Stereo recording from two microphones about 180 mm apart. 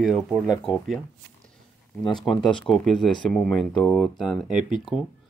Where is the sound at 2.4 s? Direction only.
Centre (ahead or behind).